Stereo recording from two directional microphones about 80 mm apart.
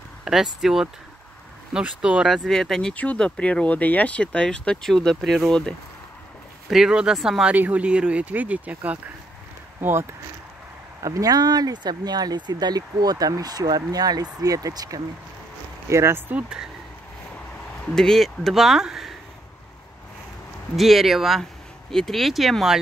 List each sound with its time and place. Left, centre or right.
0.2 s speech: centre
2.2 s speech: centre
2.9 s speech: centre
6.7 s speech: centre
7.5 s speech: centre
9.8 s speech: right
11.0 s speech: right
15.9 s speech: right
17.9 s speech: centre
20.7 s speech: centre